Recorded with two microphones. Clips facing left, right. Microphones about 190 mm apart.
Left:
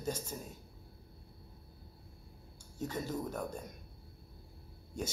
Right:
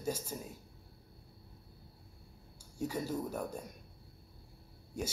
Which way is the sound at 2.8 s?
10° right (ahead or behind).